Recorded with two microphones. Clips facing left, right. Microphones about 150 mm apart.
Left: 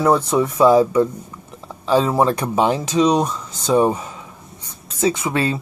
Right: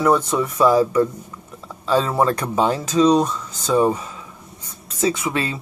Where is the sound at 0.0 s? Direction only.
20° left (ahead or behind).